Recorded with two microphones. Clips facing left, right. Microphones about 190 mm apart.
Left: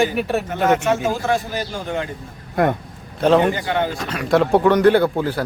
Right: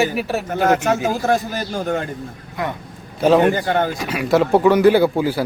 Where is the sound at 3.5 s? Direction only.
45° right (ahead or behind).